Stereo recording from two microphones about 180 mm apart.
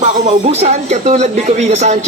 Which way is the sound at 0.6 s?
40° right (ahead or behind).